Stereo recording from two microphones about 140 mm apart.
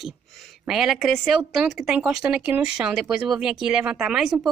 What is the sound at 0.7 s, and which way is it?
A woman's voice, centre (ahead or behind).